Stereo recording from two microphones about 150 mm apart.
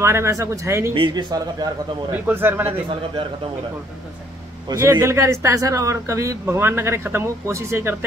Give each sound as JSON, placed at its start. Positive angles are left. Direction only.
{"t": 0.0, "sound": "speech", "side_deg": -20}
{"t": 0.9, "sound": "speech", "side_deg": -30}
{"t": 2.1, "sound": "speech", "side_deg": -15}
{"t": 2.6, "sound": "speech", "side_deg": -35}
{"t": 4.6, "sound": "speech", "side_deg": -25}